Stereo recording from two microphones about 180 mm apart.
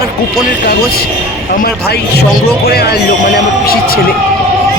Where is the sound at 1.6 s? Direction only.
65° left (ahead or behind).